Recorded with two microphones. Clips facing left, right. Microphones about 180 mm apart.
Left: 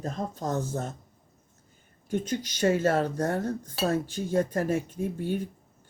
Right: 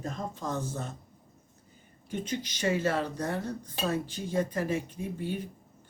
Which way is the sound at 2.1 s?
45° left (ahead or behind).